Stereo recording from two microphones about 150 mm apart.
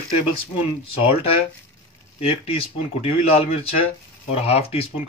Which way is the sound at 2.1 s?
40° left (ahead or behind).